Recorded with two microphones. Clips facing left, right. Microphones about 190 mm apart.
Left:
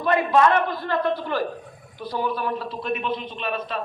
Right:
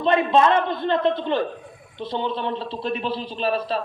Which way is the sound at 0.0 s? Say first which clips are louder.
Right 1 dB; 25° right (ahead or behind).